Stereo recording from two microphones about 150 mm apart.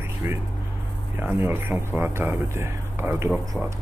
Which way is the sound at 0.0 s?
15° right (ahead or behind).